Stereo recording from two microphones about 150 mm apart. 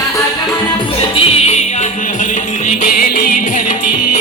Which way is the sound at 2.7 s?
65° left (ahead or behind).